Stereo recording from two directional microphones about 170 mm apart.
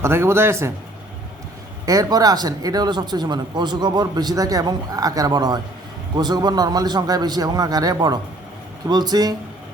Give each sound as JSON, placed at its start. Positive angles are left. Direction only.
{"t": 0.0, "sound": "a man's voice", "side_deg": -15}
{"t": 1.9, "sound": "speech", "side_deg": -20}